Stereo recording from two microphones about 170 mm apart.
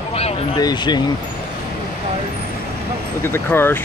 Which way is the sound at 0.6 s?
25° left (ahead or behind).